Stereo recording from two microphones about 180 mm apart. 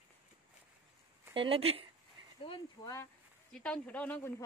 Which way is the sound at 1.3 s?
30° right (ahead or behind).